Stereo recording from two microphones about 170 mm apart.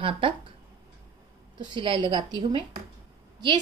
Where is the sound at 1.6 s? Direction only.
30° right (ahead or behind).